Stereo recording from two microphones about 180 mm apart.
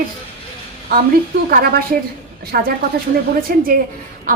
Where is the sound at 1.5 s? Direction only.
55° right (ahead or behind).